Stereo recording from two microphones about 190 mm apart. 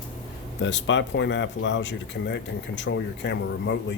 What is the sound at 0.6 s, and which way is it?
Speech, 75° left (ahead or behind).